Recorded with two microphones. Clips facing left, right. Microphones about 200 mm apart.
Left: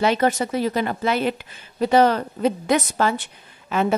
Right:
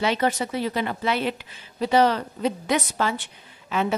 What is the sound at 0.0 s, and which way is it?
A woman's voice, 50° left (ahead or behind).